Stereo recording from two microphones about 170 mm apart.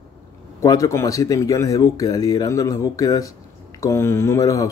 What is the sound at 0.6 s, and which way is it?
A man's voice, 20° left (ahead or behind).